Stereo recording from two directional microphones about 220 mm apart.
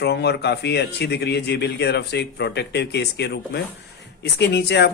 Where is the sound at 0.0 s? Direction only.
50° left (ahead or behind).